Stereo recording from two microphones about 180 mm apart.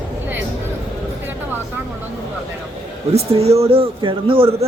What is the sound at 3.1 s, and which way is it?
A man's voice, 35° right (ahead or behind).